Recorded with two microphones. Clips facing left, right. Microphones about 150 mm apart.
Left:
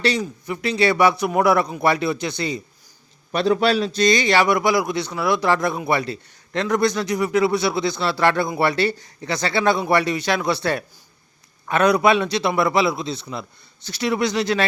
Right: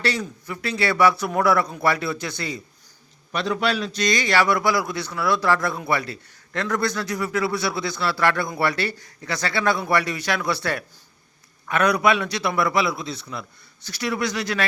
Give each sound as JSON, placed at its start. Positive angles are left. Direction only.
{"t": 0.0, "sound": "a man's voice", "side_deg": 20}
{"t": 3.3, "sound": "a man's voice", "side_deg": 35}